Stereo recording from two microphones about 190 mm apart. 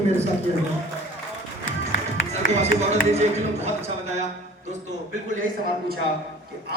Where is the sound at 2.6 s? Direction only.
35° right (ahead or behind).